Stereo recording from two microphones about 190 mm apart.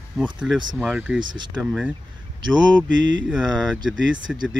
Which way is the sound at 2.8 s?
75° right (ahead or behind).